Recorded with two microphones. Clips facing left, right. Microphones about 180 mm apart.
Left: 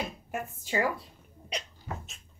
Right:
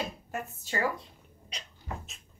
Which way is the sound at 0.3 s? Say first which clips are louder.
Left 2 dB; 15° left (ahead or behind).